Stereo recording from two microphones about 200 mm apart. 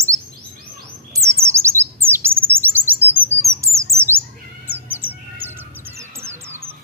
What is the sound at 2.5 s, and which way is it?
Chirp, 10° right (ahead or behind).